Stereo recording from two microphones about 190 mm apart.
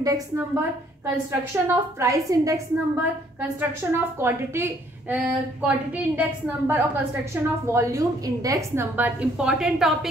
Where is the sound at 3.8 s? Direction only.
15° right (ahead or behind).